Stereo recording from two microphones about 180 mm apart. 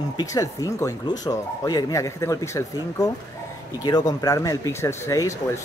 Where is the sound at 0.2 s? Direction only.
20° left (ahead or behind).